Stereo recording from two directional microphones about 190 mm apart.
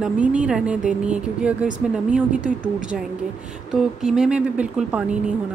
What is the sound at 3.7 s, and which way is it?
Speech, centre (ahead or behind).